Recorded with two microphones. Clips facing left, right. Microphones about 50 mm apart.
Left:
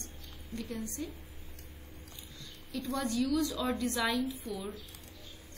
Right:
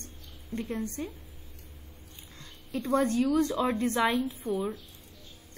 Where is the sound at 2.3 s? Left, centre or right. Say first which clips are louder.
Right 5 dB; right.